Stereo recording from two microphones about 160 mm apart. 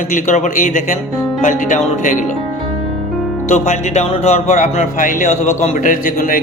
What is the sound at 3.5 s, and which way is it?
Speech, 45° left (ahead or behind).